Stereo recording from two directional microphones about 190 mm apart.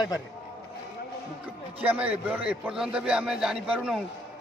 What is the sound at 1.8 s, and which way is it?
A man's voice, 10° right (ahead or behind).